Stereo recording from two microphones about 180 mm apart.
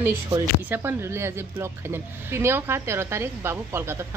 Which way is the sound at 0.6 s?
10° right (ahead or behind).